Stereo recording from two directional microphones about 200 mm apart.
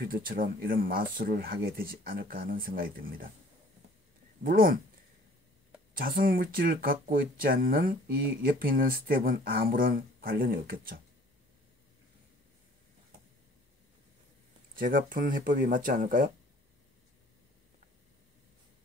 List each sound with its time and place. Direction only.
0.0 s speech: 45° right (ahead or behind)
4.4 s speech: 45° right (ahead or behind)
5.9 s speech: 45° right (ahead or behind)
14.8 s speech: 45° right (ahead or behind)